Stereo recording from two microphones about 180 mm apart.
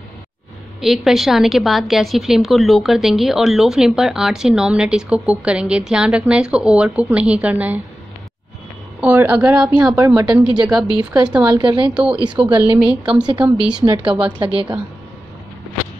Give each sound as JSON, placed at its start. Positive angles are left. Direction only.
{"t": 0.7, "sound": "a woman's voice", "side_deg": 0}
{"t": 9.0, "sound": "speech", "side_deg": -10}
{"t": 11.5, "sound": "a woman's voice", "side_deg": -30}
{"t": 11.9, "sound": "a woman's voice", "side_deg": -5}
{"t": 13.9, "sound": "a woman's voice", "side_deg": -25}